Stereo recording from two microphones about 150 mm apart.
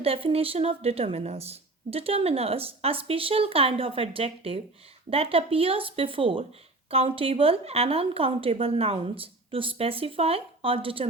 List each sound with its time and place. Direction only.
0.0 s speech: 40° right (ahead or behind)